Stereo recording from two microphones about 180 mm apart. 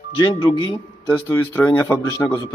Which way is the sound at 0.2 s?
25° left (ahead or behind).